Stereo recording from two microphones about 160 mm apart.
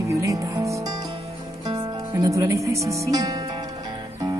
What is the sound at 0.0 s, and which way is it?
Music, 20° right (ahead or behind).